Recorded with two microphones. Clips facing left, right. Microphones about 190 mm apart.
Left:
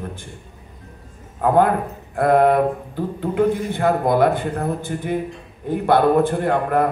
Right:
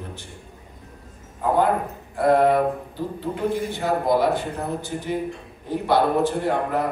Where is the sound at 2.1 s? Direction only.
55° left (ahead or behind).